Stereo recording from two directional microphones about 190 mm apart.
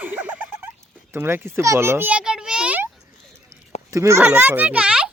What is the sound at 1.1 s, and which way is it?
A child's voice, 10° right (ahead or behind).